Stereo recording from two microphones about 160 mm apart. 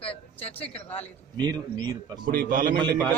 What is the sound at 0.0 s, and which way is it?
Speech, 35° left (ahead or behind).